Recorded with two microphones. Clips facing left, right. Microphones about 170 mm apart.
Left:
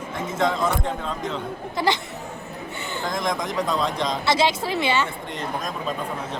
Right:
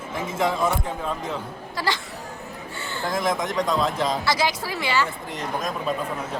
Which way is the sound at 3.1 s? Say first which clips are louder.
Right 2 dB; 5° right (ahead or behind).